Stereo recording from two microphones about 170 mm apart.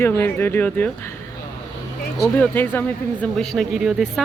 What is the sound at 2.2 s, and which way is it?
Speech, 10° left (ahead or behind).